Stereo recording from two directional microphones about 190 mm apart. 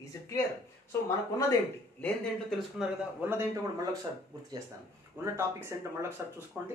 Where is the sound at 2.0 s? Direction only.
Centre (ahead or behind); by 3.9 s 15° right (ahead or behind).